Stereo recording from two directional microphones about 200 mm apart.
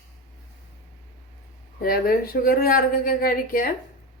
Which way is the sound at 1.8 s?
50° left (ahead or behind).